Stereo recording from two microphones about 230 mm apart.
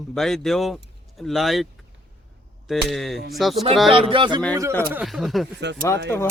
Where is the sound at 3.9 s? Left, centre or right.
Right.